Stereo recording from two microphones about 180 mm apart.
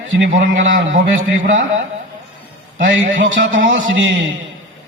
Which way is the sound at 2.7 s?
90° right.